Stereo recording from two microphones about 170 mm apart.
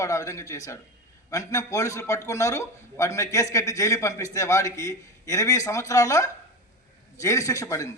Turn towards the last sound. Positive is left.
turn(degrees=20)  # may be behind; listen again after turning